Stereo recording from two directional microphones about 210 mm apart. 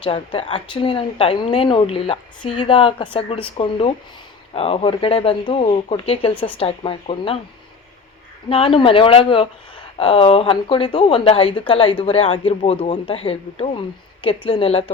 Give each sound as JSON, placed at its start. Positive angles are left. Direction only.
{"t": 0.0, "sound": "speech", "side_deg": 25}
{"t": 8.4, "sound": "speech", "side_deg": 25}